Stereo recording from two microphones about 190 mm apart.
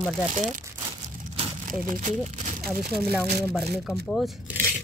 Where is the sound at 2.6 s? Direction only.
Centre (ahead or behind).